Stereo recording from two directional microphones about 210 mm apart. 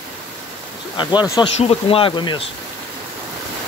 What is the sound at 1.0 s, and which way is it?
Speech, 20° left (ahead or behind).